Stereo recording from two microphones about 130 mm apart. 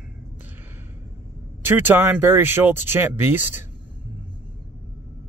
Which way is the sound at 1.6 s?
15° right (ahead or behind).